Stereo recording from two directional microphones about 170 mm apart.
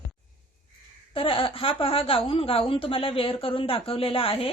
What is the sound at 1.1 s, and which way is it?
A woman's voice, 30° left (ahead or behind).